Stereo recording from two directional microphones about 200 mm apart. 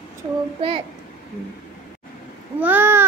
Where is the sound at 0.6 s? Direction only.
30° right (ahead or behind).